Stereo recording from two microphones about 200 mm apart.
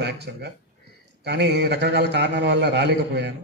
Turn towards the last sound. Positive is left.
turn(degrees=-55)  # may be behind; listen again after turning